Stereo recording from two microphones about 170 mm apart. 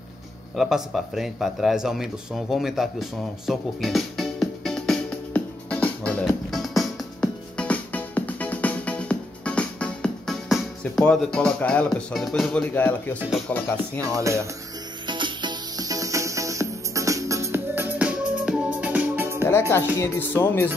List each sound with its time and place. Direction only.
0.6 s a sound: centre (ahead or behind)
13.5 s music: 10° left (ahead or behind)
14.0 s speech: 20° right (ahead or behind)
15.0 s music: 25° right (ahead or behind)
19.7 s music: 15° left (ahead or behind)